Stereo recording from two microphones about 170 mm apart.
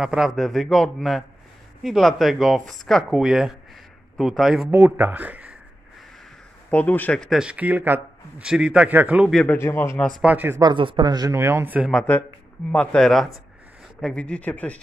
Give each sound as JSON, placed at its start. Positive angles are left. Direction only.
{"t": 0.0, "sound": "speech", "side_deg": -5}
{"t": 6.7, "sound": "speech", "side_deg": 10}
{"t": 9.4, "sound": "a man's voice", "side_deg": 10}
{"t": 10.2, "sound": "speech", "side_deg": -10}
{"t": 10.6, "sound": "speech", "side_deg": -30}
{"t": 11.9, "sound": "a man's voice", "side_deg": 5}